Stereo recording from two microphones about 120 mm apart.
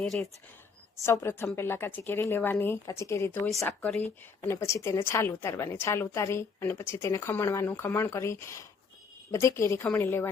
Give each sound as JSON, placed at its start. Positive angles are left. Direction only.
{"t": 0.0, "sound": "speech", "side_deg": 5}
{"t": 1.0, "sound": "a woman's voice", "side_deg": 20}